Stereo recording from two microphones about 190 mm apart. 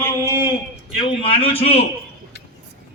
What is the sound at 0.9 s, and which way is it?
Speech, 30° left (ahead or behind).